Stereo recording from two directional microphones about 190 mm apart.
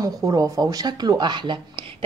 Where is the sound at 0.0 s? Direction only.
20° right (ahead or behind).